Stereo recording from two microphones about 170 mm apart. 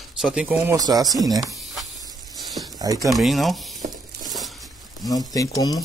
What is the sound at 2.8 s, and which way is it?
Speech, 20° right (ahead or behind).